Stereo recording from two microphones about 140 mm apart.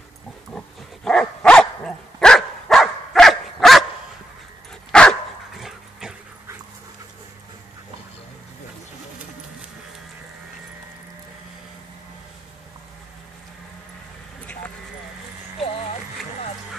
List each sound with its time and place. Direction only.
0.5 s dog: 5° left (ahead or behind)
4.9 s dog: 5° left (ahead or behind)
15.6 s a sound: 50° left (ahead or behind)